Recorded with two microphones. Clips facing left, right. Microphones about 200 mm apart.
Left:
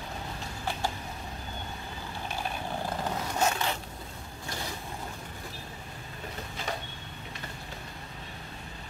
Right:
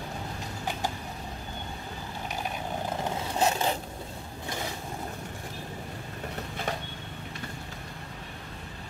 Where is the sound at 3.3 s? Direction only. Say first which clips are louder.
Right 3 dB; 30° right (ahead or behind).